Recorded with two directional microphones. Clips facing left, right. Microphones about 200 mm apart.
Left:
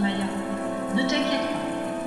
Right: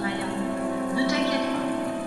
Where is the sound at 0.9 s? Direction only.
20° left (ahead or behind).